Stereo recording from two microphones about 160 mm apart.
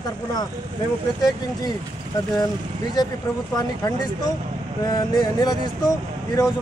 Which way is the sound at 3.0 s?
25° left (ahead or behind).